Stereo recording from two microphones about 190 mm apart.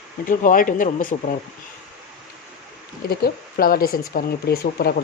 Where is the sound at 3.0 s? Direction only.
50° left (ahead or behind).